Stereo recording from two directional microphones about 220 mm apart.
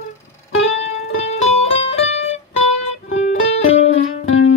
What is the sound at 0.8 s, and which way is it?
Music, 30° left (ahead or behind).